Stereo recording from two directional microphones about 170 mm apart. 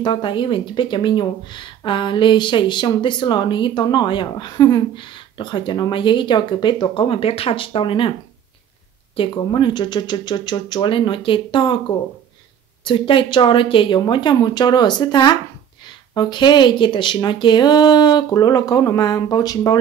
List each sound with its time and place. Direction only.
0.0 s speech: 30° left (ahead or behind)
9.1 s speech: 30° left (ahead or behind)
12.8 s speech: 30° left (ahead or behind)